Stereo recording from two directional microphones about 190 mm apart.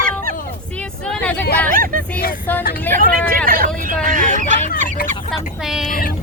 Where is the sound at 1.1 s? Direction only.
5° left (ahead or behind).